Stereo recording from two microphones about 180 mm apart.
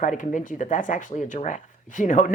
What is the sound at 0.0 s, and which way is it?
Speech, 45° left (ahead or behind).